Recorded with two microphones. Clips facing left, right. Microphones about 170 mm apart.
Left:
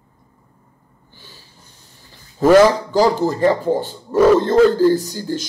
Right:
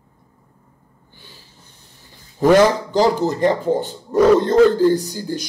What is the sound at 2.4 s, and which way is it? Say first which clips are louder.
Speech: left 2 dB; 15° right (ahead or behind).